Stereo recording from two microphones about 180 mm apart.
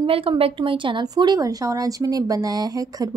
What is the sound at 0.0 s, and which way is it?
Speech, 30° right (ahead or behind).